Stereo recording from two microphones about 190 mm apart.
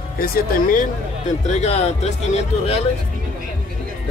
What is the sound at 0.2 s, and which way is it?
Speech, 50° left (ahead or behind).